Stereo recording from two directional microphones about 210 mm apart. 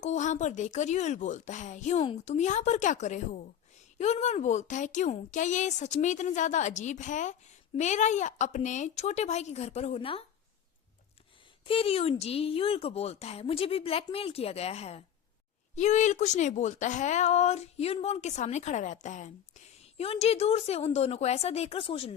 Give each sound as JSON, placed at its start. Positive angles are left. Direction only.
{"t": 0.0, "sound": "a woman's voice", "side_deg": 35}
{"t": 11.7, "sound": "a woman's voice", "side_deg": 30}